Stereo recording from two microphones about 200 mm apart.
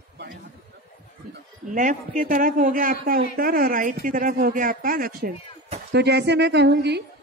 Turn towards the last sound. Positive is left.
turn(degrees=-55)  # may be behind; listen again after turning